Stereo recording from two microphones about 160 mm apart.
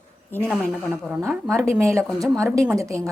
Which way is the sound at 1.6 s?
15° right (ahead or behind).